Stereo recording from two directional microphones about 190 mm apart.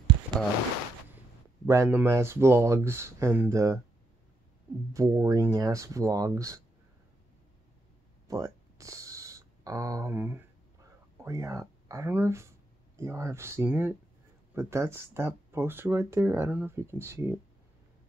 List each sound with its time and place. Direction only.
1.7 s speech: 15° right (ahead or behind)
4.9 s speech: 15° right (ahead or behind)
8.3 s a sound: 15° right (ahead or behind)
11.2 s speech: 15° right (ahead or behind)